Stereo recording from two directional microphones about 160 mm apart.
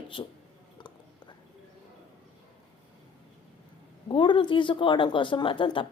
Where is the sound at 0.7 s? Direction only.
30° left (ahead or behind).